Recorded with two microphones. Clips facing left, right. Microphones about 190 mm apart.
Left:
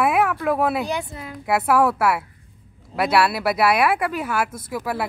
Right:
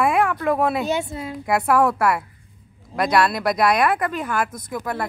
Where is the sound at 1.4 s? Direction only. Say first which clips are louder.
Even; 5° left (ahead or behind).